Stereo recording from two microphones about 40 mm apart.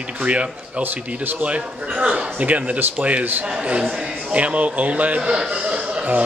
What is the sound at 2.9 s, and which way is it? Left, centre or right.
A man's voice, right.